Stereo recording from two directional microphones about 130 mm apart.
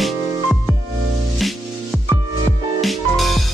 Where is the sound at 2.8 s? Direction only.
Centre (ahead or behind).